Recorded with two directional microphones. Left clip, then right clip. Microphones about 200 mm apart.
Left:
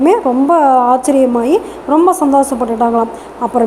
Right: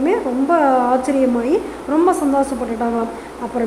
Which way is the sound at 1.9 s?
5° left (ahead or behind).